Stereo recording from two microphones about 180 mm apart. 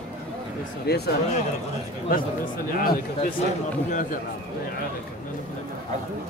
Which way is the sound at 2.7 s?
55° left (ahead or behind).